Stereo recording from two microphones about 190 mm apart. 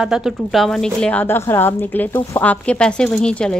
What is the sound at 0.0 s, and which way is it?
A woman's voice, 5° right (ahead or behind).